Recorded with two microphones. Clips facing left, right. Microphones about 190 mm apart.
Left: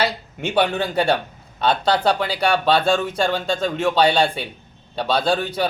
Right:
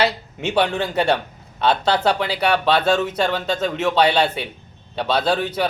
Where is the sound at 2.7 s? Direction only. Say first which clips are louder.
Even; 25° left (ahead or behind).